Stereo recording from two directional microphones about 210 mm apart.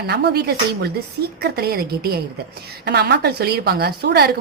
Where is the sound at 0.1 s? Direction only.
50° right (ahead or behind).